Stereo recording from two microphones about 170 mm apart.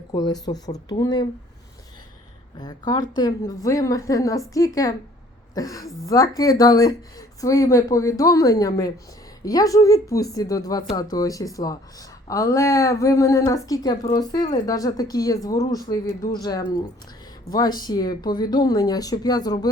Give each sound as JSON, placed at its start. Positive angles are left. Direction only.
{"t": 0.1, "sound": "speech", "side_deg": 20}
{"t": 2.6, "sound": "speech", "side_deg": 25}